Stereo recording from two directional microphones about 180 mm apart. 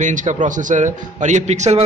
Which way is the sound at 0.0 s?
45° right (ahead or behind).